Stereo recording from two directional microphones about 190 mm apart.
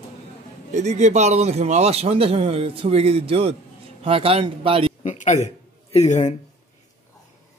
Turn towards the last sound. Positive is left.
turn(degrees=40)  # may be behind; listen again after turning